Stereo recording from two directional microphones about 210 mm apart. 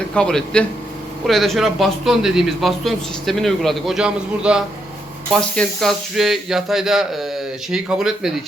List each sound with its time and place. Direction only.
0.1 s a man's voice: 5° left (ahead or behind)